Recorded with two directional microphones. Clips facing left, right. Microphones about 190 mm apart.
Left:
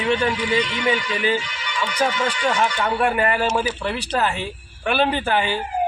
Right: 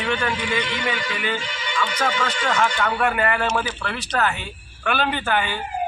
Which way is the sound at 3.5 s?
10° left (ahead or behind).